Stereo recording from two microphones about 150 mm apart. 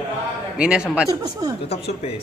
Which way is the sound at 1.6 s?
40° left (ahead or behind).